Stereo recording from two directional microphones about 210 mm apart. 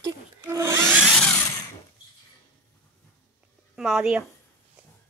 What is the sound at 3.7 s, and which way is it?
Speech, centre (ahead or behind).